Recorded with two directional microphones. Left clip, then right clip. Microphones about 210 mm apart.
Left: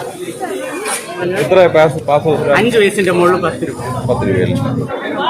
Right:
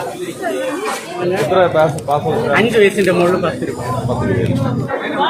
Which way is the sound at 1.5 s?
35° left (ahead or behind).